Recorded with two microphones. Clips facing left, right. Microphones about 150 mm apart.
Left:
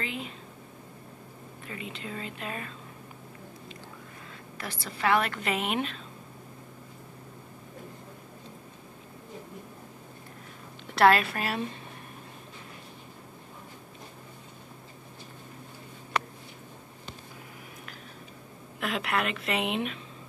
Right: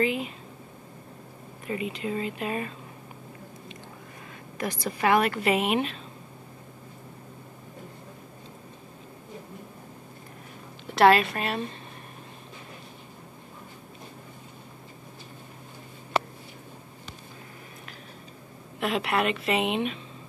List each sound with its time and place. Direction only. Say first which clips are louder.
0.0 s speech: right 10 dB; 10° right (ahead or behind)
1.7 s speech: right 9 dB; 10° right (ahead or behind)
4.8 s speech: right 3 dB; 15° right (ahead or behind)
11.0 s a woman's voice: right 2 dB; centre (ahead or behind)
16.1 s a sound: right 4 dB; 30° right (ahead or behind)
18.8 s a woman's voice: right 4 dB; centre (ahead or behind)